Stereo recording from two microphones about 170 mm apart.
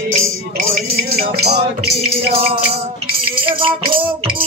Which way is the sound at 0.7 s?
65° right (ahead or behind).